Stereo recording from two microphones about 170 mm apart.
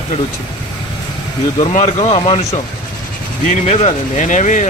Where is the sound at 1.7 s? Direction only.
40° left (ahead or behind).